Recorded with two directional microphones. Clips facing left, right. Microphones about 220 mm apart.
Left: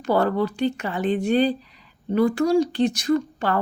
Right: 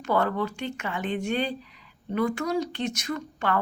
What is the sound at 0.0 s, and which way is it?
A woman's voice, 35° left (ahead or behind).